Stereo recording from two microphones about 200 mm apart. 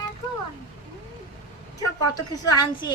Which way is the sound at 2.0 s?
20° left (ahead or behind).